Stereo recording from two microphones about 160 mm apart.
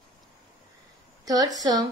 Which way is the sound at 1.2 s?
25° right (ahead or behind).